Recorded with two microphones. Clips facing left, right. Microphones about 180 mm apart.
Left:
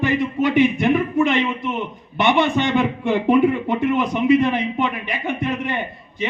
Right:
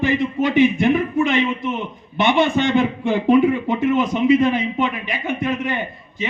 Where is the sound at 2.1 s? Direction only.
60° left (ahead or behind).